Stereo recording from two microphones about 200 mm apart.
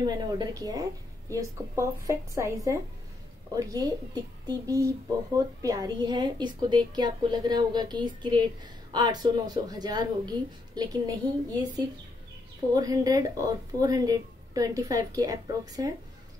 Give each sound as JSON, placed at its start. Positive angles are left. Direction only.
{"t": 0.0, "sound": "a woman's voice", "side_deg": -20}
{"t": 12.7, "sound": "speech", "side_deg": -20}